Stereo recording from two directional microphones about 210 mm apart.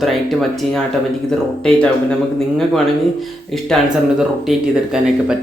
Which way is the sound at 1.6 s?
5° left (ahead or behind).